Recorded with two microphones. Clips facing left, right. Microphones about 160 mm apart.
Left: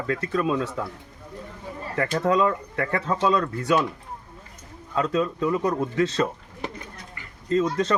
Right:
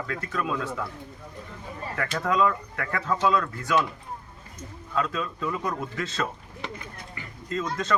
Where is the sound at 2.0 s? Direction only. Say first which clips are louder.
Left 3 dB; 35° left (ahead or behind).